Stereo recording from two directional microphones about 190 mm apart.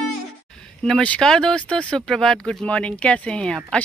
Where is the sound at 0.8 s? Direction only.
5° left (ahead or behind).